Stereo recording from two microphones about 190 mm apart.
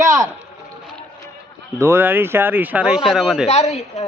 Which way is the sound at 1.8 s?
10° right (ahead or behind).